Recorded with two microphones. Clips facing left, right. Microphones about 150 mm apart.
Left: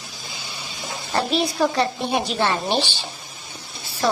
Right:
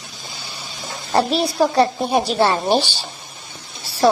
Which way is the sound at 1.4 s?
35° right (ahead or behind).